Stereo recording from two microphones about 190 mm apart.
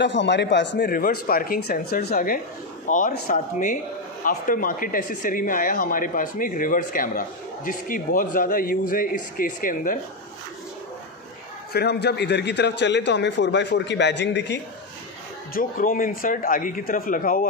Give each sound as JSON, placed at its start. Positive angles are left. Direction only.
{"t": 0.0, "sound": "a man's voice", "side_deg": 70}
{"t": 0.8, "sound": "speech", "side_deg": 50}
{"t": 11.7, "sound": "a man's voice", "side_deg": 60}
{"t": 15.5, "sound": "speech", "side_deg": 45}